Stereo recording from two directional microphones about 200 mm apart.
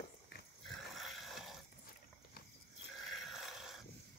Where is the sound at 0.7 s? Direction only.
Centre (ahead or behind).